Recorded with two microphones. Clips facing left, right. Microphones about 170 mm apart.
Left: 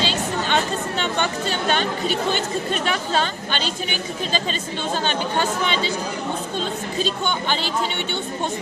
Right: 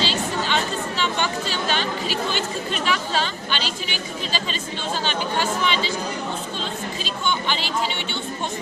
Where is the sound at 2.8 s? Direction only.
45° left (ahead or behind).